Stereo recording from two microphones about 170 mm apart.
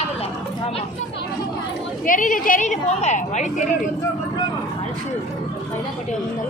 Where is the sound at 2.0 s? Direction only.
50° left (ahead or behind).